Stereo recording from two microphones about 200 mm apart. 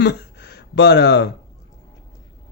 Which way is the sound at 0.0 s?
60° left (ahead or behind).